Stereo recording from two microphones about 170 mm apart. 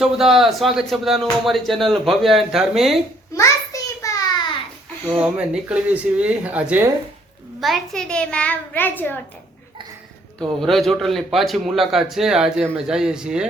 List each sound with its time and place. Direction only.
0.0 s speech: centre (ahead or behind)
3.3 s a sound: 20° left (ahead or behind)
5.2 s a child's voice: 5° right (ahead or behind); by 9.1 s 10° left (ahead or behind)
10.6 s speech: centre (ahead or behind)